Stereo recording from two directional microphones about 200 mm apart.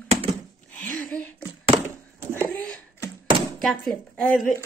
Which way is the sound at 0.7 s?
10° left (ahead or behind).